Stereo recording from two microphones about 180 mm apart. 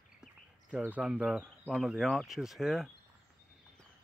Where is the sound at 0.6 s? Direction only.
5° right (ahead or behind).